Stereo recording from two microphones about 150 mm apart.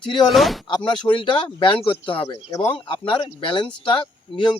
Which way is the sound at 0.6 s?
30° left (ahead or behind).